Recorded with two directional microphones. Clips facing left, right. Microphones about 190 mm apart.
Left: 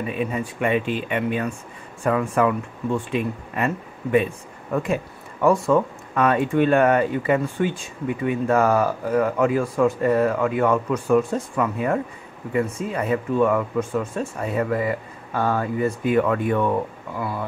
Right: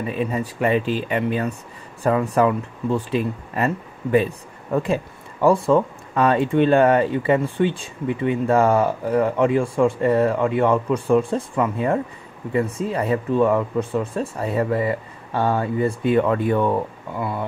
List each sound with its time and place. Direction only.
0.2 s speech: 35° right (ahead or behind)